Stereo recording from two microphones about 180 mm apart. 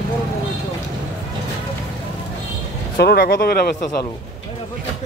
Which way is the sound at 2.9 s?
65° left (ahead or behind).